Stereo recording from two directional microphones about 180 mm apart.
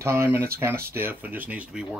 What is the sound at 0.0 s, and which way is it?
Speech, 15° right (ahead or behind).